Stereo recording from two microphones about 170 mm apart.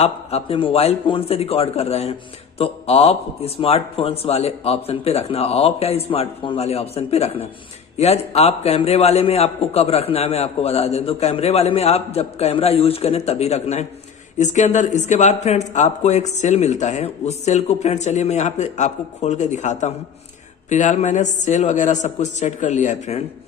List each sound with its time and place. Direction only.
0.0 s a man's voice: 35° left (ahead or behind)